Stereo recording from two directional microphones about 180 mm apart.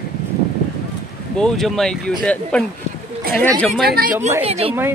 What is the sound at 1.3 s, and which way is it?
Speech, 5° left (ahead or behind).